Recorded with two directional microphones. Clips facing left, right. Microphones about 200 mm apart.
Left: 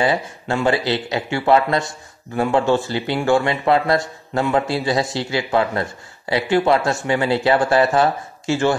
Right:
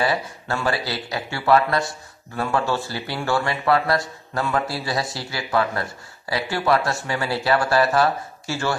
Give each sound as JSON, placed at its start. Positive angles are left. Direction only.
{"t": 0.0, "sound": "speech", "side_deg": 25}